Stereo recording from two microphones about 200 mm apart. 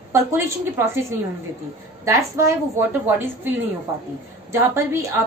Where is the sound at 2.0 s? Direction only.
15° right (ahead or behind).